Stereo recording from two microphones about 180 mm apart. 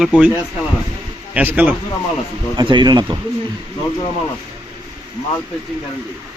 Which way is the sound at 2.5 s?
25° right (ahead or behind).